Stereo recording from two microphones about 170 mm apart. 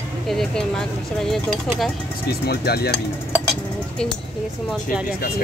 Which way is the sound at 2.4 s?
65° left (ahead or behind).